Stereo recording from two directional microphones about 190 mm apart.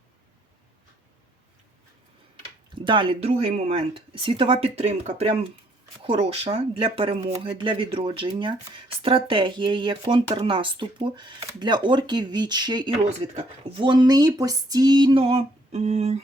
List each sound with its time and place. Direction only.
2.7 s speech: 25° right (ahead or behind)
13.0 s speech: 35° right (ahead or behind)
13.7 s speech: 25° right (ahead or behind)